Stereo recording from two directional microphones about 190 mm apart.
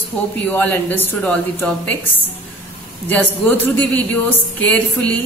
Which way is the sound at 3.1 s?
10° left (ahead or behind).